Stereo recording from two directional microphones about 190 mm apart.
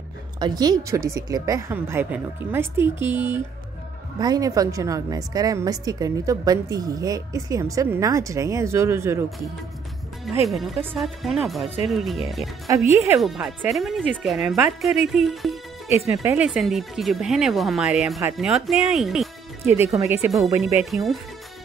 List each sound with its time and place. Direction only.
0.4 s a woman's voice: 20° right (ahead or behind)
10.4 s speech: centre (ahead or behind)
12.6 s a woman's voice: 15° right (ahead or behind)
13.2 s speech: centre (ahead or behind)
19.8 s a woman's voice: 15° right (ahead or behind)
20.2 s speech: centre (ahead or behind)